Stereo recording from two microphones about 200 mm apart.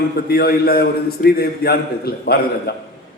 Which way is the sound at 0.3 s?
50° left (ahead or behind).